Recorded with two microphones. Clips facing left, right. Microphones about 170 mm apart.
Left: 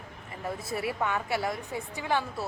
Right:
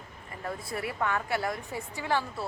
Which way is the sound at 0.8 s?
15° left (ahead or behind).